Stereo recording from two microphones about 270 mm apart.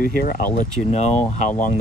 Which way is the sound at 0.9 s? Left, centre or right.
Left.